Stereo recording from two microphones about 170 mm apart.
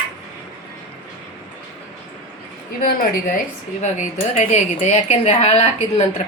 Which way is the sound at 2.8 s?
55° left (ahead or behind).